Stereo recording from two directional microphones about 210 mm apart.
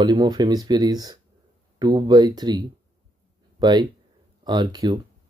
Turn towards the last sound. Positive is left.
turn(degrees=-20)  # may be behind; listen again after turning